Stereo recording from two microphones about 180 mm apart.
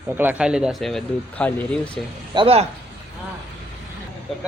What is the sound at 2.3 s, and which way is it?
Speech, 35° right (ahead or behind).